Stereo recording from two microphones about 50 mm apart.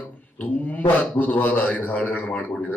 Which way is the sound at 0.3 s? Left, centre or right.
Left.